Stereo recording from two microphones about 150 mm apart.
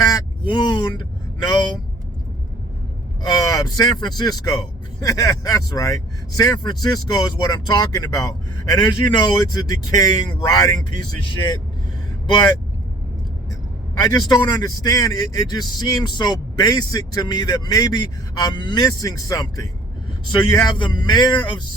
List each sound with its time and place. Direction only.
0.0 s speech: 30° left (ahead or behind)
3.2 s speech: 25° left (ahead or behind)
13.9 s a man's voice: 25° left (ahead or behind)